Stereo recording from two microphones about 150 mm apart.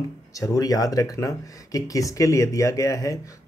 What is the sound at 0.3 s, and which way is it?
Speech, 20° left (ahead or behind).